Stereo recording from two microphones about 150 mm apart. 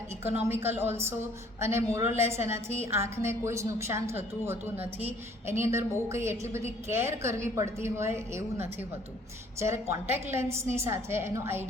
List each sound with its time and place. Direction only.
0.4 s a woman's voice: 15° right (ahead or behind)